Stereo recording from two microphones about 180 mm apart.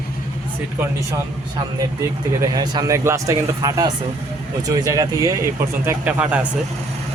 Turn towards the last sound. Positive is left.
turn(degrees=-10)  # may be behind; listen again after turning